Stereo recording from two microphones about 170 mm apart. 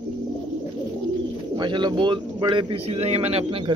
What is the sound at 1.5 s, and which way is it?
Speech, 25° right (ahead or behind).